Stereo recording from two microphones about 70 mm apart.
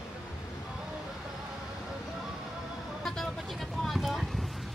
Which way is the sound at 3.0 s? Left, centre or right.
Centre.